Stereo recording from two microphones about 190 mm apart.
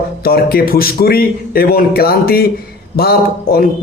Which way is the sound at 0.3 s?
50° left (ahead or behind).